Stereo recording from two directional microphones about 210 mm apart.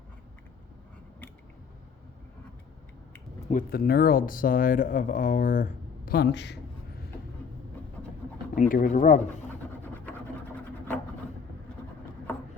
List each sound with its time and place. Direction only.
3.5 s speech: 45° left (ahead or behind)
8.5 s speech: 40° left (ahead or behind)